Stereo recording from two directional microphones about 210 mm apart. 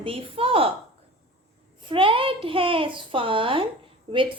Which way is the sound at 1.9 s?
25° right (ahead or behind).